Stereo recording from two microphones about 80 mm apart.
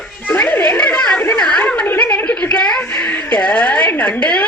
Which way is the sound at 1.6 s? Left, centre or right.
Centre.